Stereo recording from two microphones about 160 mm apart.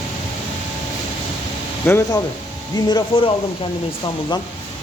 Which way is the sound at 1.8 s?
15° left (ahead or behind).